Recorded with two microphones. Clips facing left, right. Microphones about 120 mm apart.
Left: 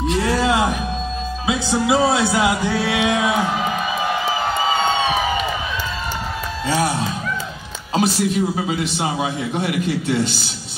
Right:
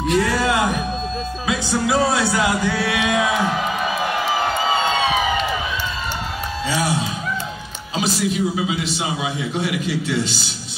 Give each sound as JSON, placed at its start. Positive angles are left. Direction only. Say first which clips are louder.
{"t": 0.0, "sound": "speech", "louder": "even", "side_deg": 25}
{"t": 1.5, "sound": "music", "louder": "left 2 dB", "side_deg": 20}
{"t": 7.9, "sound": "a man's voice", "louder": "left 3 dB", "side_deg": 50}